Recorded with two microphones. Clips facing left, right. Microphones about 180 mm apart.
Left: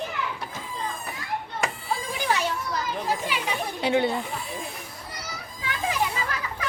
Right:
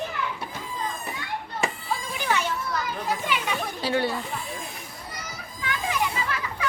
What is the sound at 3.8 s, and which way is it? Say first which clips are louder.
Speech: left 3 dB; 20° left (ahead or behind).